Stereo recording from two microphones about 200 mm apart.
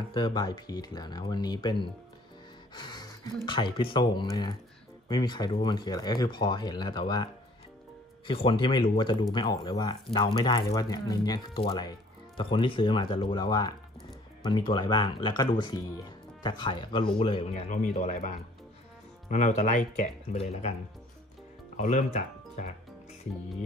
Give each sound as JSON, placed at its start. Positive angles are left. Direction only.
{"t": 0.1, "sound": "speech", "side_deg": 20}
{"t": 2.7, "sound": "a sound", "side_deg": 20}
{"t": 3.4, "sound": "speech", "side_deg": 25}
{"t": 8.3, "sound": "speech", "side_deg": 25}
{"t": 17.5, "sound": "speech", "side_deg": 35}
{"t": 21.7, "sound": "speech", "side_deg": 40}